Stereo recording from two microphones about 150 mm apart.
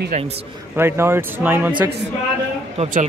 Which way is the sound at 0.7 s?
15° right (ahead or behind).